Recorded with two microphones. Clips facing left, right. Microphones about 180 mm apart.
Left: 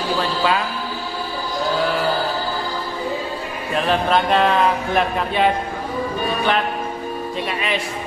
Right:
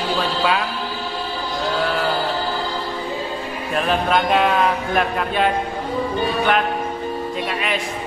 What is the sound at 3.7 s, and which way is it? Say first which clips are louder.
Speech: left 1 dB; 5° right (ahead or behind).